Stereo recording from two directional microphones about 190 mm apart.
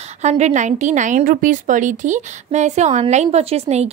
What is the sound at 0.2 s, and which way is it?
A woman's voice, 35° right (ahead or behind).